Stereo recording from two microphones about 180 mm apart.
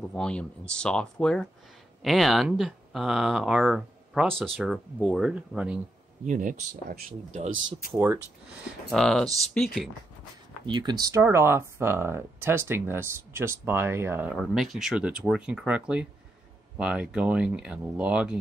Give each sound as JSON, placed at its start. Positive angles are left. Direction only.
{"t": 0.1, "sound": "speech", "side_deg": 5}
{"t": 6.2, "sound": "speech", "side_deg": -45}
{"t": 7.9, "sound": "speech", "side_deg": -15}
{"t": 8.9, "sound": "speech", "side_deg": 5}
{"t": 10.7, "sound": "speech", "side_deg": -25}
{"t": 14.3, "sound": "speech", "side_deg": 0}